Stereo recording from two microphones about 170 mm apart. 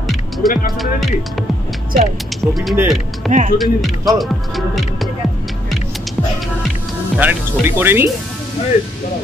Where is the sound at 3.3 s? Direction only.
45° right (ahead or behind).